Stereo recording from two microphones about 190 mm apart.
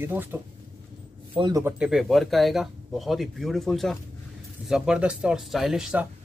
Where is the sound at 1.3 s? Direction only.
25° right (ahead or behind).